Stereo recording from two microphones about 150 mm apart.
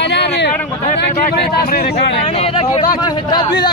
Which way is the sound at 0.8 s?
75° left (ahead or behind).